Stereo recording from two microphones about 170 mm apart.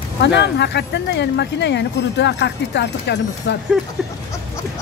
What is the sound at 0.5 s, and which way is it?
Speech, 90° left.